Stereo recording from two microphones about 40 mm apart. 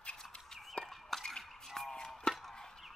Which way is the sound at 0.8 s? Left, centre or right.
Left.